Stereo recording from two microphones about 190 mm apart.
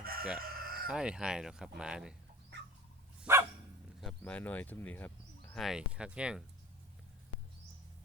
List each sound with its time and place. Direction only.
0.0 s crowing: 50° right (ahead or behind)
0.3 s chicken: 50° right (ahead or behind)
0.9 s speech: 5° right (ahead or behind)
3.2 s dog: 15° right (ahead or behind)
4.2 s speech: 10° left (ahead or behind)